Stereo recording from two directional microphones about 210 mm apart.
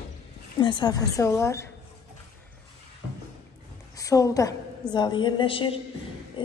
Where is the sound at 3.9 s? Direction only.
15° left (ahead or behind).